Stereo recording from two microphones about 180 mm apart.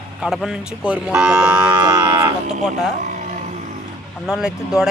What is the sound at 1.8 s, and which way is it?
Moo, 25° right (ahead or behind).